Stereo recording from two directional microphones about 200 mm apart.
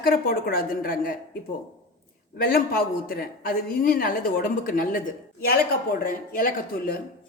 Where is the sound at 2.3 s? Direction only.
45° left (ahead or behind).